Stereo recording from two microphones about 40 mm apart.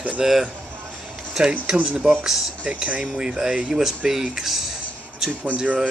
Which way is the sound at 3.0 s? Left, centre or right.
Centre.